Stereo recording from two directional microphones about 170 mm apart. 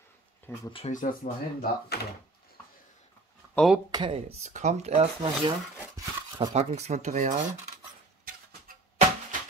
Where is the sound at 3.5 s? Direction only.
5° right (ahead or behind).